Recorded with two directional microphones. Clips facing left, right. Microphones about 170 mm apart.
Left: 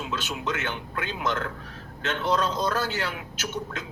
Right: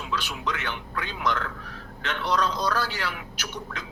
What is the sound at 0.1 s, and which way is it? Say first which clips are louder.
Speech: right 2 dB; 25° left (ahead or behind).